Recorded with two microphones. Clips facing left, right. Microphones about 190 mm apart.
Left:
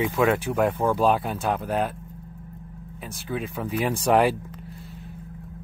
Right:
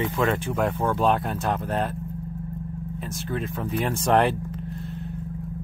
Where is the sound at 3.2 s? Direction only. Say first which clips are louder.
Left 1 dB; 5° left (ahead or behind).